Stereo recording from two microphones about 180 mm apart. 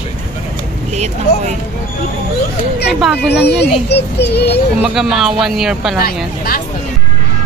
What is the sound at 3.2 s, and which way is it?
A child's voice, 70° left (ahead or behind).